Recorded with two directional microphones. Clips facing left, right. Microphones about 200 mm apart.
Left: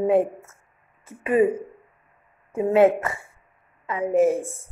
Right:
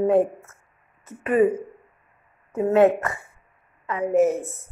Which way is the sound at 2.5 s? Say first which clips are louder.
Even; 10° left (ahead or behind).